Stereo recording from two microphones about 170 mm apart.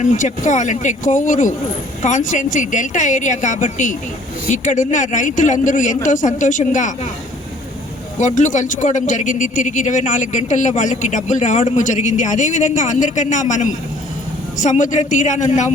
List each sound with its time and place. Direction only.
0.0 s a man's voice: 45° left (ahead or behind)
8.2 s a man's voice: 45° left (ahead or behind)